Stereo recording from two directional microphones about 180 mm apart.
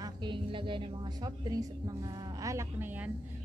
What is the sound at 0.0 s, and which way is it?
A woman's voice, 25° right (ahead or behind).